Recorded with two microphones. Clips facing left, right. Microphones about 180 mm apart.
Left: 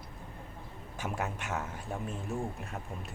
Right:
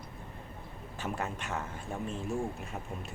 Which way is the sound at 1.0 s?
5° left (ahead or behind).